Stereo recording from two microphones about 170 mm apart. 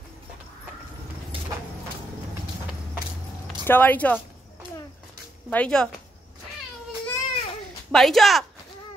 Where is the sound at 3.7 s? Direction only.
10° left (ahead or behind).